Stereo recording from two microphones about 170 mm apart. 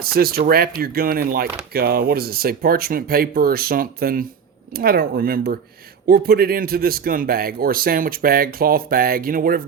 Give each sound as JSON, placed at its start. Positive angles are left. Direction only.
{"t": 0.0, "sound": "speech", "side_deg": -60}